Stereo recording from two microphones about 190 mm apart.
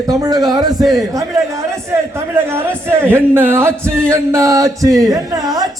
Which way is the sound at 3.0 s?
10° right (ahead or behind).